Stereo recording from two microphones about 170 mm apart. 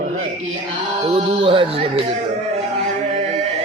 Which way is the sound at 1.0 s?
30° right (ahead or behind).